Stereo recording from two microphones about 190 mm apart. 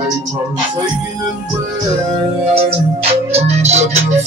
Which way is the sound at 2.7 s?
30° right (ahead or behind).